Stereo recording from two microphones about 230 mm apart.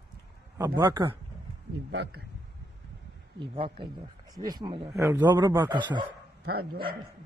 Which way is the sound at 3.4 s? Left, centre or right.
Right.